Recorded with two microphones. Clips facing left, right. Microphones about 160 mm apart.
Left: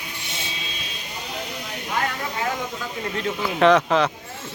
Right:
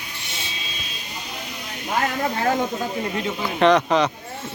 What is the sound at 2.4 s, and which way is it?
Speech, 40° right (ahead or behind).